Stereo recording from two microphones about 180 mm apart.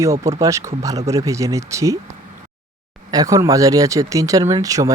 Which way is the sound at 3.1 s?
20° right (ahead or behind).